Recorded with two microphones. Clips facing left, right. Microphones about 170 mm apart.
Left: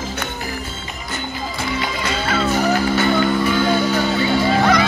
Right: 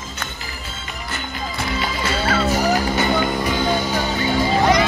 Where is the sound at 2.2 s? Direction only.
35° right (ahead or behind).